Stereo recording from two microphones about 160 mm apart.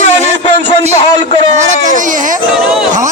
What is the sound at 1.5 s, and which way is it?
Speech, 55° right (ahead or behind).